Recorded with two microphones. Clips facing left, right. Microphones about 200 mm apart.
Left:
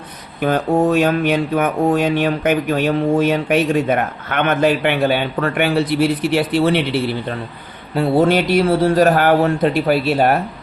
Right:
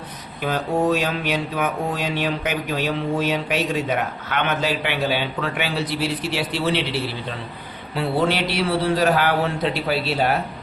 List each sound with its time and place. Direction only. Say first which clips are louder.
0.4 s speech: left 5 dB; 50° left (ahead or behind)